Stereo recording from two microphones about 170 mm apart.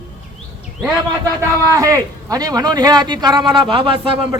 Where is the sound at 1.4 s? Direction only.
20° right (ahead or behind).